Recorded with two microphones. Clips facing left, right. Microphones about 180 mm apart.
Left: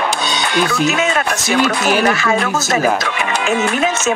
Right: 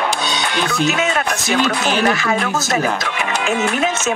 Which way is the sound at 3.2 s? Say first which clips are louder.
Left 2 dB; 90° left.